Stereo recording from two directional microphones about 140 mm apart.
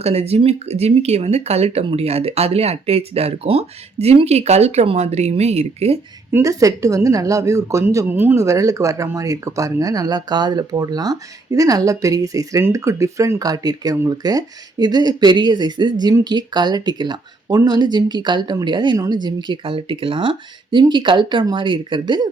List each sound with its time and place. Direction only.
0.0 s speech: 50° right (ahead or behind)
6.3 s speech: 25° right (ahead or behind)